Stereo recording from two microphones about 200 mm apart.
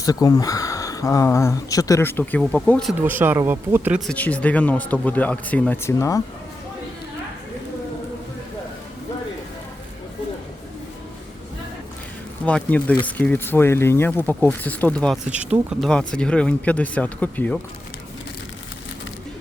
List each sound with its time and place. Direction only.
0.0 s speech: 20° left (ahead or behind); by 2.9 s centre (ahead or behind)
3.0 s speech: 10° right (ahead or behind)
4.1 s speech: 5° left (ahead or behind)
12.5 s speech: 5° left (ahead or behind)